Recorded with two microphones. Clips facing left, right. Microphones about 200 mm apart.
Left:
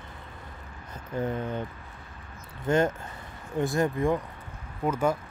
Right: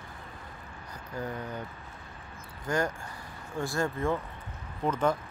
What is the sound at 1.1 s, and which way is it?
Speech, 25° left (ahead or behind).